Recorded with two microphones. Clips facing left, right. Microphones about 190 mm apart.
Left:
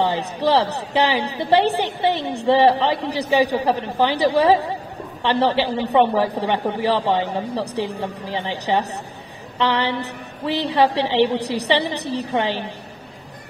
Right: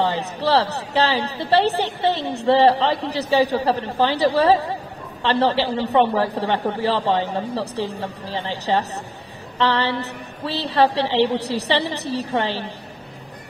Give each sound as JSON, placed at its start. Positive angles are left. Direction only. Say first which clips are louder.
{"t": 0.0, "sound": "a woman's voice", "louder": "left 2 dB", "side_deg": 15}